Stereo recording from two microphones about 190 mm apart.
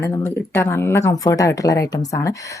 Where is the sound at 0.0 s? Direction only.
15° left (ahead or behind).